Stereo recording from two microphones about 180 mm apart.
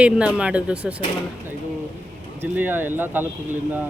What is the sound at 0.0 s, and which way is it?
Speech, 5° right (ahead or behind).